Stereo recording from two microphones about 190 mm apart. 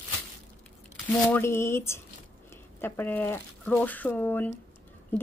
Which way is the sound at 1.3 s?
15° left (ahead or behind).